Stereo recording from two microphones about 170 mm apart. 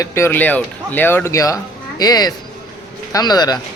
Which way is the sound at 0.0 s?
15° left (ahead or behind).